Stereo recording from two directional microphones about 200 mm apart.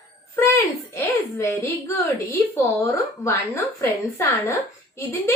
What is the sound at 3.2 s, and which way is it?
A child's voice, 15° left (ahead or behind).